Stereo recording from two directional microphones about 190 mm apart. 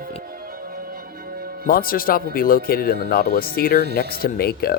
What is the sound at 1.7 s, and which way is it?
Speech, 50° left (ahead or behind).